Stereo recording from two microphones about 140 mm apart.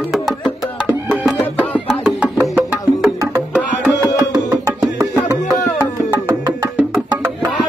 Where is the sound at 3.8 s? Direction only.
15° right (ahead or behind).